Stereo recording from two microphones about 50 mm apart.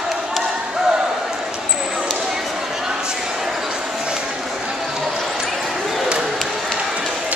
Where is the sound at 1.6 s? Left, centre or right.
Centre.